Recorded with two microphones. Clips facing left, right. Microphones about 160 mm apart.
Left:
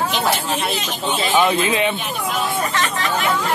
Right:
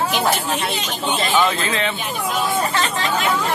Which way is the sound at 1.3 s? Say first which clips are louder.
Left 4 dB; 20° left (ahead or behind).